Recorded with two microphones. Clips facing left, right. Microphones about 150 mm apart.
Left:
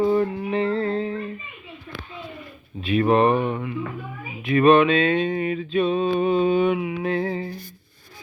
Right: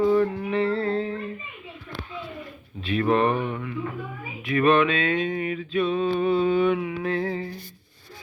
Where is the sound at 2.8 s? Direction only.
15° left (ahead or behind).